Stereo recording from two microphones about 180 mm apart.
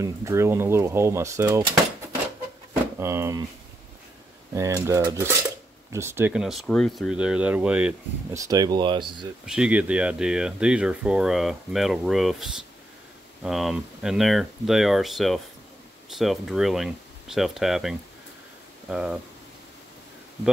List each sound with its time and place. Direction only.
0.0 s speech: 15° right (ahead or behind)
3.0 s speech: 15° right (ahead or behind)
4.6 s speech: 15° right (ahead or behind)
9.5 s speech: 5° right (ahead or behind)